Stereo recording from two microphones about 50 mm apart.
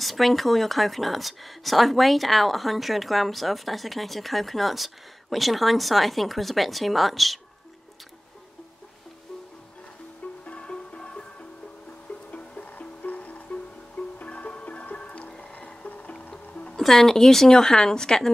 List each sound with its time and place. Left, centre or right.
0.0 s speech: centre
10.4 s music: left
12.3 s music: left
16.7 s speech: centre